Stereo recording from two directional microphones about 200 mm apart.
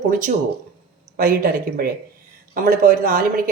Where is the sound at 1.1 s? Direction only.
45° right (ahead or behind).